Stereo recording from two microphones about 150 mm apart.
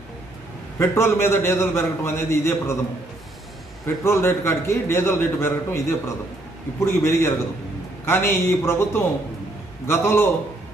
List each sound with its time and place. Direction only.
0.7 s a man's voice: 15° left (ahead or behind)
3.8 s a man's voice: 15° left (ahead or behind)